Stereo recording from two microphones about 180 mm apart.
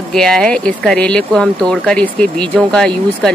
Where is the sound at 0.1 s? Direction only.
5° left (ahead or behind).